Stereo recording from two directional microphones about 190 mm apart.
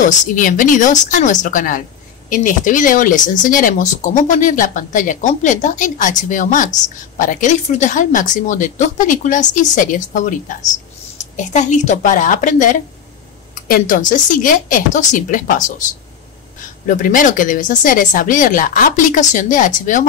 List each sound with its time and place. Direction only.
0.0 s speech: 45° left (ahead or behind)
16.8 s speech: 45° left (ahead or behind)